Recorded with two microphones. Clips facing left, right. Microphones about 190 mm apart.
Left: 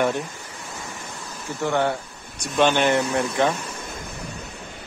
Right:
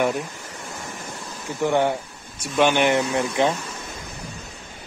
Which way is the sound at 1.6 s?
15° right (ahead or behind).